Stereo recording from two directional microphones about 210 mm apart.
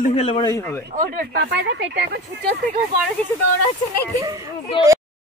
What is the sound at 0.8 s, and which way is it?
Speech, 40° right (ahead or behind).